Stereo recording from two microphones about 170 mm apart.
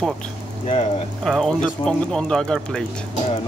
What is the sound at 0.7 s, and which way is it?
Speech, 35° left (ahead or behind).